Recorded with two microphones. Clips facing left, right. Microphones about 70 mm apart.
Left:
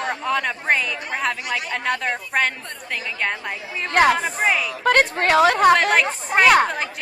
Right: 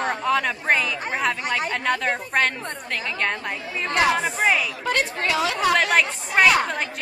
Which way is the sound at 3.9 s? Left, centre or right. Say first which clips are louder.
Left 4 dB; left.